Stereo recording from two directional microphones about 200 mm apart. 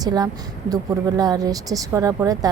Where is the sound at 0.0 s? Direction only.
20° right (ahead or behind).